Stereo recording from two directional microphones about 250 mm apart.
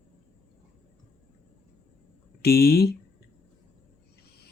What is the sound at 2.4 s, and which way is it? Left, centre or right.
Speech, left.